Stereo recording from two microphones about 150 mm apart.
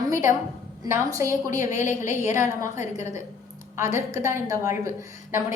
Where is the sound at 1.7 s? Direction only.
55° left (ahead or behind).